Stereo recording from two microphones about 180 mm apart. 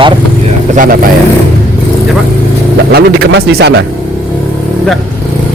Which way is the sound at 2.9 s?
60° right (ahead or behind).